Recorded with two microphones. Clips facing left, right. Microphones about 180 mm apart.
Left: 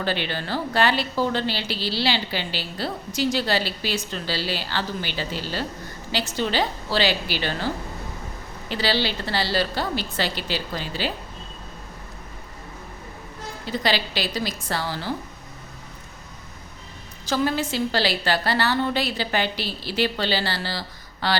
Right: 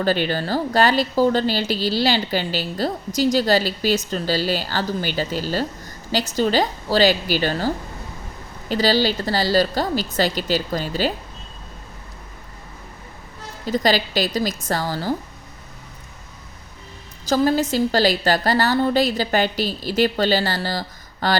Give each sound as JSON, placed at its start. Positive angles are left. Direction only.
{"t": 0.0, "sound": "a woman's voice", "side_deg": -40}
{"t": 8.7, "sound": "a woman's voice", "side_deg": -40}
{"t": 13.7, "sound": "a woman's voice", "side_deg": -45}
{"t": 17.2, "sound": "a woman's voice", "side_deg": -40}